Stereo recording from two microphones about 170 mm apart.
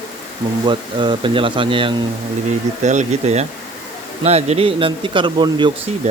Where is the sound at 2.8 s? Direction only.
45° right (ahead or behind).